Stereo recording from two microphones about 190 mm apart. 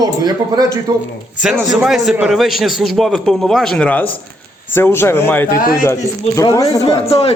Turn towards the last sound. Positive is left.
turn(degrees=30)  # may be behind; listen again after turning